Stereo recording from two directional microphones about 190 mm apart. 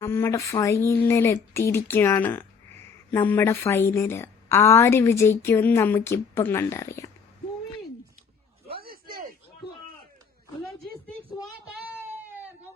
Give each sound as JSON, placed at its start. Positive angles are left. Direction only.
{"t": 0.0, "sound": "speech", "side_deg": 15}
{"t": 8.6, "sound": "a sound", "side_deg": -55}
{"t": 11.9, "sound": "baby cry", "side_deg": -10}